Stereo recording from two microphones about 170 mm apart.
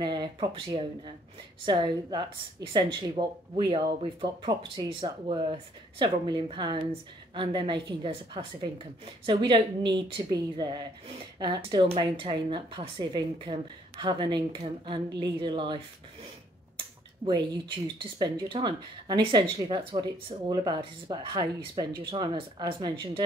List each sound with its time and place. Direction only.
0.0 s speech: 25° right (ahead or behind)
17.9 s speech: 30° right (ahead or behind)